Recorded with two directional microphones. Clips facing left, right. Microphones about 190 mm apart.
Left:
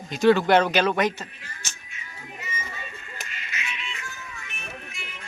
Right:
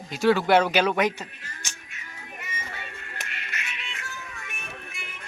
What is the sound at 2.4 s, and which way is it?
Music, 65° right (ahead or behind).